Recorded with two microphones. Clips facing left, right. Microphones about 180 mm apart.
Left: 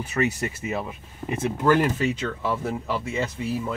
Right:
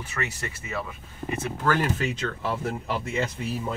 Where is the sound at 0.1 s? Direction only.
20° left (ahead or behind).